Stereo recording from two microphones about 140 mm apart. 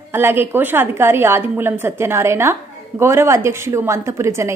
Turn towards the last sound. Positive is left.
turn(degrees=-20)  # may be behind; listen again after turning